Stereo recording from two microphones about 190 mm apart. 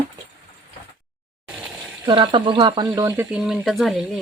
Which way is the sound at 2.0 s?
25° right (ahead or behind).